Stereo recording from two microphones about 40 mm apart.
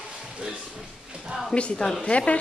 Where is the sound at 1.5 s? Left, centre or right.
Left.